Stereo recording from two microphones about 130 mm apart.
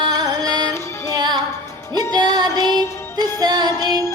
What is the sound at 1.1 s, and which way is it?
Music, 35° right (ahead or behind).